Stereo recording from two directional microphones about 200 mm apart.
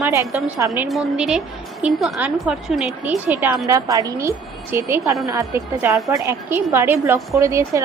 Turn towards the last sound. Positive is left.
turn(degrees=-15)  # may be behind; listen again after turning